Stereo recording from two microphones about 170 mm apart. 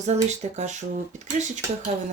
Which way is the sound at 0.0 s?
40° right (ahead or behind).